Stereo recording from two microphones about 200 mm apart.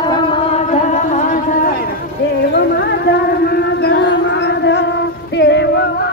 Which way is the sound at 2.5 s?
55° left (ahead or behind).